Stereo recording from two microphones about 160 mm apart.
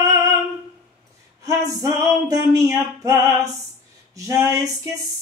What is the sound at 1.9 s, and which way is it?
Music, 20° right (ahead or behind).